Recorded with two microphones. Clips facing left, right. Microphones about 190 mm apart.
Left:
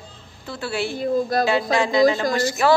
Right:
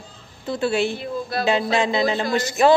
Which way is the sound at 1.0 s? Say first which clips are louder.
Left 6 dB; 45° left (ahead or behind).